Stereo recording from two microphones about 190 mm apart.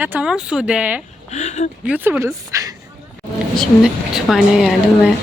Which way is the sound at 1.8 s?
10° right (ahead or behind).